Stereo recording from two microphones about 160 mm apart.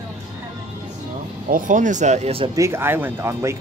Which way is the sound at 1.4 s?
60° right (ahead or behind).